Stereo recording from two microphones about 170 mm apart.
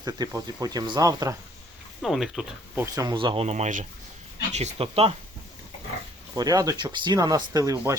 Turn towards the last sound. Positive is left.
turn(degrees=-20)  # may be behind; listen again after turning